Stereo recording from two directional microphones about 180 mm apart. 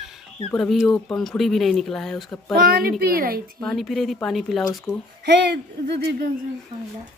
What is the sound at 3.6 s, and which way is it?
Speech, centre (ahead or behind).